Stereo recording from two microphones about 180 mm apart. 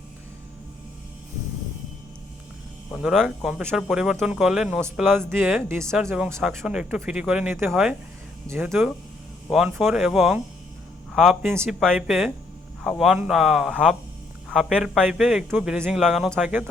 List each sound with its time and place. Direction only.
2.9 s speech: centre (ahead or behind)
5.5 s speech: 15° right (ahead or behind)
6.4 s speech: centre (ahead or behind)
8.7 s speech: centre (ahead or behind)